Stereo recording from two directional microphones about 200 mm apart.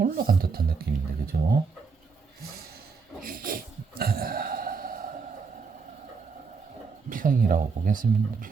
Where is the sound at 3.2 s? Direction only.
45° right (ahead or behind).